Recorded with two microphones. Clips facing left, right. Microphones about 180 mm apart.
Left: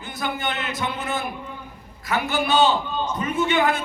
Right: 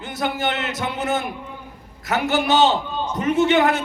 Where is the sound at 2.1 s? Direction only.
80° right.